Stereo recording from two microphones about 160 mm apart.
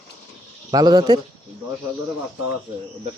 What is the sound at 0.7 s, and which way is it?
Speech, 25° right (ahead or behind).